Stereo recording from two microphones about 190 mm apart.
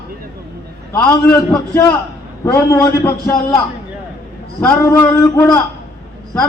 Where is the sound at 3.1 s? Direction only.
25° left (ahead or behind).